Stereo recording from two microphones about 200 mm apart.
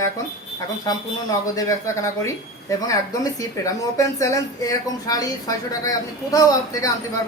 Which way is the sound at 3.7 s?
15° left (ahead or behind).